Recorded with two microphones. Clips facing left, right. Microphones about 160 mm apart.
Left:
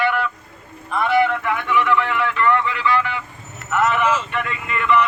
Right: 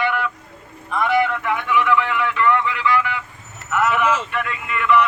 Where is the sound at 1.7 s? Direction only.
10° right (ahead or behind).